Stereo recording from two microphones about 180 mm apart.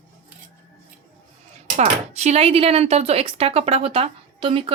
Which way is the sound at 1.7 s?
40° right (ahead or behind).